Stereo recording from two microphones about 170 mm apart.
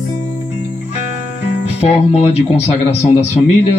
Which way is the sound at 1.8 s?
35° left (ahead or behind).